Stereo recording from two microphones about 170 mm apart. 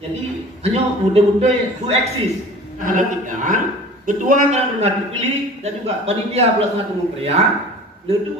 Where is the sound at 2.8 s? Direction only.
50° right (ahead or behind).